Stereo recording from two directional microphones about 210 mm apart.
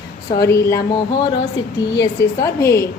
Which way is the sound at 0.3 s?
15° left (ahead or behind).